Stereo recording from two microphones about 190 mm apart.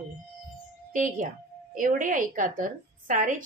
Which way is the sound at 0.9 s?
45° right (ahead or behind).